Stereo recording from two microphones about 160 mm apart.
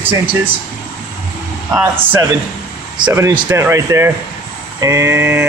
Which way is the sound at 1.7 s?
15° right (ahead or behind).